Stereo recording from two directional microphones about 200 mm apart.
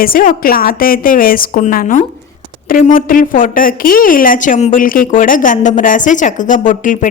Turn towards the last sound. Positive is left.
turn(degrees=40)  # may be behind; listen again after turning